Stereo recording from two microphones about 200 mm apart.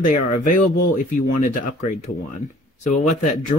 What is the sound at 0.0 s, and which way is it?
Speech, 40° left (ahead or behind).